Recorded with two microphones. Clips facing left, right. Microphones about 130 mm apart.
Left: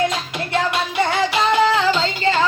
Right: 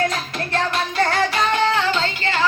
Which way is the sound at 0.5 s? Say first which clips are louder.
Left 2 dB; 5° left (ahead or behind).